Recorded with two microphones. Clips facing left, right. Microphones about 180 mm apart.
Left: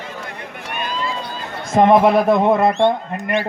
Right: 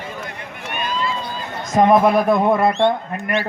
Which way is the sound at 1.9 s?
25° left (ahead or behind).